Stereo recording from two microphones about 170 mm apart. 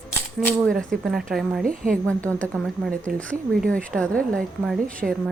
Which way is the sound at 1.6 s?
55° right (ahead or behind).